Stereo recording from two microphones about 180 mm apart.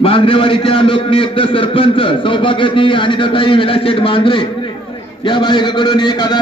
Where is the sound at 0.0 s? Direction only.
30° left (ahead or behind).